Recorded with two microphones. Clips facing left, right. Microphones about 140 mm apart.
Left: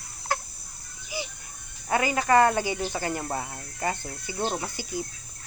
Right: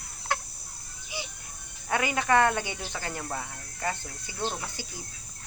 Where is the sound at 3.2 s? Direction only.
30° left (ahead or behind).